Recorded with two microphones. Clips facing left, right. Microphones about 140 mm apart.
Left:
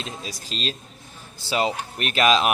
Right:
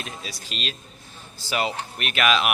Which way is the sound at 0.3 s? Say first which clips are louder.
Left 3 dB; 35° left (ahead or behind).